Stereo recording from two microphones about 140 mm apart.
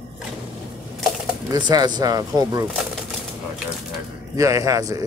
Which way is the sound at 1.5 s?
30° right (ahead or behind).